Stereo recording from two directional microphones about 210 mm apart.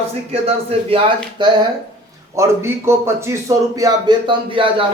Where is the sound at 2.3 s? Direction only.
15° right (ahead or behind).